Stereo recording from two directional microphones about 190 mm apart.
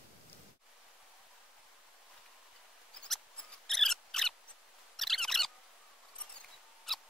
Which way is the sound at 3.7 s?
Centre (ahead or behind).